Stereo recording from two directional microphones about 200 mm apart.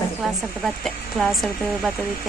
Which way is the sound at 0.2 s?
Centre (ahead or behind).